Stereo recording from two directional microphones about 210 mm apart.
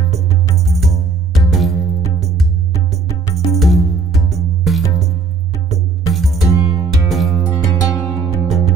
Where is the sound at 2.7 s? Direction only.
15° left (ahead or behind).